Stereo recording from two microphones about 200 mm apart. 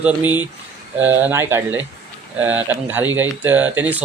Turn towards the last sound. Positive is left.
turn(degrees=-10)  # may be behind; listen again after turning